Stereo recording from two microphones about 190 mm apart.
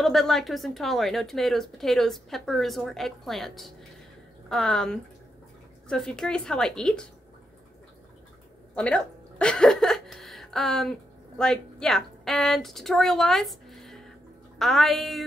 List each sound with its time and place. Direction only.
0.0 s a woman's voice: centre (ahead or behind)
8.7 s a woman's voice: 5° left (ahead or behind)